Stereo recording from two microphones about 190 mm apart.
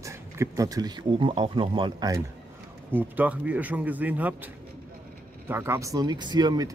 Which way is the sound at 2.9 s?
10° right (ahead or behind).